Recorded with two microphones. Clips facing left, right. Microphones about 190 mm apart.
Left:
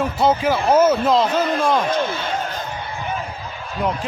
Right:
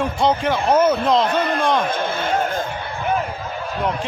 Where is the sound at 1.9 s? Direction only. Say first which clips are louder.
Even; 50° right (ahead or behind).